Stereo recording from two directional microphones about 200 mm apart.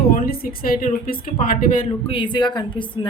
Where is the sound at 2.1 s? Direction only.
25° left (ahead or behind).